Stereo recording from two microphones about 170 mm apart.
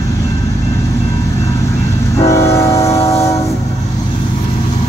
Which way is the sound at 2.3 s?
15° left (ahead or behind).